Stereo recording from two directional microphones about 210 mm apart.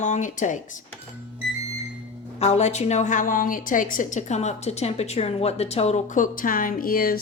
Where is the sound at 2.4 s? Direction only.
30° left (ahead or behind).